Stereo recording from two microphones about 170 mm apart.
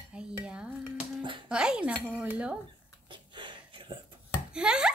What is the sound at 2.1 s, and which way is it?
Cutlery, 5° right (ahead or behind).